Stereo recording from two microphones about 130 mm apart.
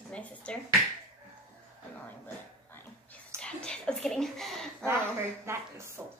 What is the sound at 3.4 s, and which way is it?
Speech, 5° left (ahead or behind).